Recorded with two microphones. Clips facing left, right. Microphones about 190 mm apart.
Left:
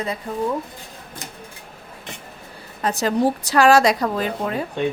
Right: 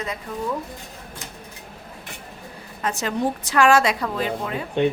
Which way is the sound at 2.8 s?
35° left (ahead or behind).